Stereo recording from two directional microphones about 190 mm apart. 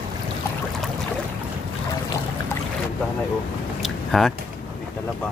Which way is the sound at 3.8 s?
Centre (ahead or behind).